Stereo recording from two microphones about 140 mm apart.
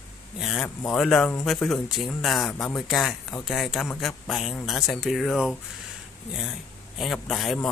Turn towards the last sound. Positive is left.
turn(degrees=0)  # may be behind; listen again after turning